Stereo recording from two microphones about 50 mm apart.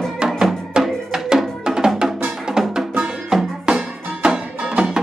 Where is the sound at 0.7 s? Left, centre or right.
Centre.